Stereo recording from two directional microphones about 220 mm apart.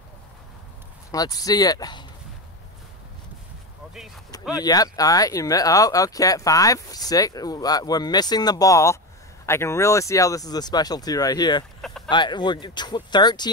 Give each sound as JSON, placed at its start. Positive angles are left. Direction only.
{"t": 1.1, "sound": "speech", "side_deg": 15}
{"t": 4.6, "sound": "speech", "side_deg": 15}